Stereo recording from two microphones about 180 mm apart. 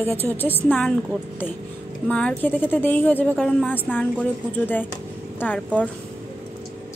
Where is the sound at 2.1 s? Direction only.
5° left (ahead or behind).